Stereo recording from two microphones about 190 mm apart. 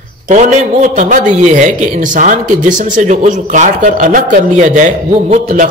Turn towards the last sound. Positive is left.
turn(degrees=-45)  # may be behind; listen again after turning